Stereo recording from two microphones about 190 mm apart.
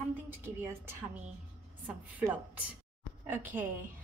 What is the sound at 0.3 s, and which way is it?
A woman's voice, 10° right (ahead or behind).